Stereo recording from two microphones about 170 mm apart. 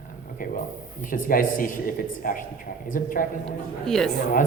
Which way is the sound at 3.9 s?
5° left (ahead or behind).